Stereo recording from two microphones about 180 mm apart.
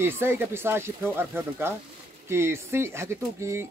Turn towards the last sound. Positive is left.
turn(degrees=-15)  # may be behind; listen again after turning